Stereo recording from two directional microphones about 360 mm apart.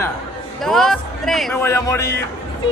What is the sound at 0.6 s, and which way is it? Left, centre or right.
Speech, centre.